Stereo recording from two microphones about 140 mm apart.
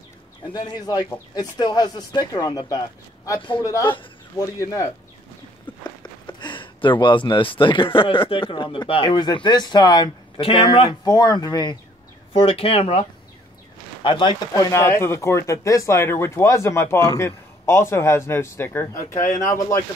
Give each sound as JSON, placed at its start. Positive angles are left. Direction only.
{"t": 0.5, "sound": "speech", "side_deg": 30}
{"t": 5.9, "sound": "speech", "side_deg": 35}
{"t": 12.3, "sound": "speech", "side_deg": 45}
{"t": 14.0, "sound": "speech", "side_deg": 35}
{"t": 14.5, "sound": "speech", "side_deg": 20}
{"t": 19.1, "sound": "speech", "side_deg": 65}